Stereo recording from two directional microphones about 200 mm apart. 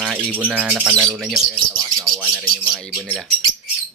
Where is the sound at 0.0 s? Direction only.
5° right (ahead or behind).